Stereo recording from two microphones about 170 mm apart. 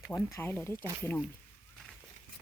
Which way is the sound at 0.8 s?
20° right (ahead or behind).